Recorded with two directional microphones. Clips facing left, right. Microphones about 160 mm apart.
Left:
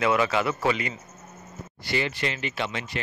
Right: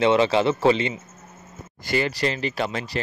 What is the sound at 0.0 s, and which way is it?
Speech, 25° right (ahead or behind).